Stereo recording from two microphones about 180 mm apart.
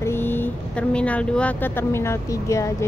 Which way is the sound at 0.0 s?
10° left (ahead or behind).